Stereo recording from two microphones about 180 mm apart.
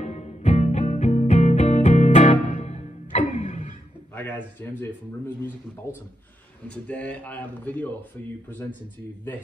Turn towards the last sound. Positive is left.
turn(degrees=10)  # may be behind; listen again after turning